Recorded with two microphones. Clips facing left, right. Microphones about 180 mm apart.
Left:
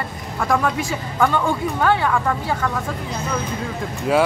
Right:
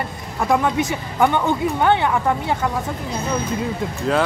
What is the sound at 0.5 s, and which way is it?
Speech, 20° right (ahead or behind).